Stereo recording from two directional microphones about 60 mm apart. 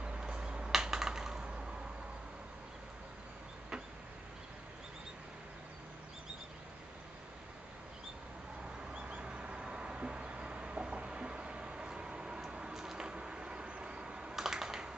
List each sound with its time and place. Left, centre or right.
0.0 s finger snapping: centre
0.7 s computer keyboard: centre
8.9 s a sound: centre